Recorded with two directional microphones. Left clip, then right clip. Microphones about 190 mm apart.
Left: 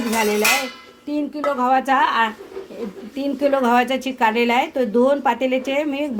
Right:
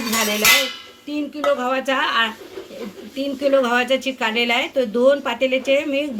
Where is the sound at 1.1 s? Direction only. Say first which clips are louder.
Right 2 dB; 60° left (ahead or behind).